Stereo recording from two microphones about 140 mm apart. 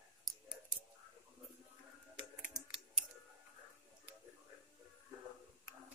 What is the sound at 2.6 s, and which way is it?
Typing, 5° right (ahead or behind).